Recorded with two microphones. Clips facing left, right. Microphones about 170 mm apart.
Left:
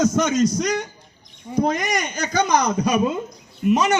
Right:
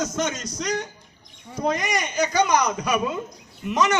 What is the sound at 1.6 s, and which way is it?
A man's voice, 45° left (ahead or behind).